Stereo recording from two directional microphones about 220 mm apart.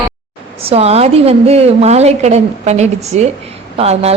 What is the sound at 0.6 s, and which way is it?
A woman's voice, 25° right (ahead or behind).